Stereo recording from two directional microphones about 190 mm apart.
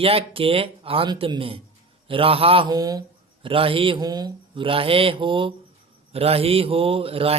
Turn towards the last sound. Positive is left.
turn(degrees=-30)  # may be behind; listen again after turning